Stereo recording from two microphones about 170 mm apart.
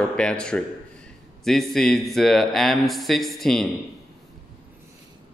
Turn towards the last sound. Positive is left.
turn(degrees=0)  # may be behind; listen again after turning